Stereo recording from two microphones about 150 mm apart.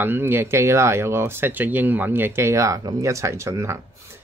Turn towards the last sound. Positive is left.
turn(degrees=-20)  # may be behind; listen again after turning